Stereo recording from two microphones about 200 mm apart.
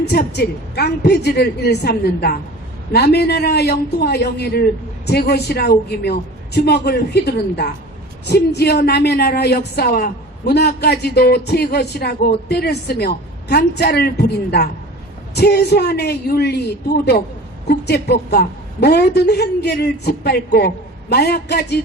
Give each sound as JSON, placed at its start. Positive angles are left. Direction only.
{"t": 0.0, "sound": "a woman's voice", "side_deg": 55}